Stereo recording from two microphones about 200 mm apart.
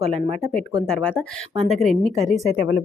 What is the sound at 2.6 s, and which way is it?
Speech, 55° left (ahead or behind).